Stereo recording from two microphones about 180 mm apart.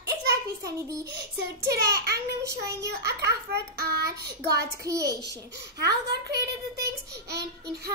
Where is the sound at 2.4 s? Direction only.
15° right (ahead or behind).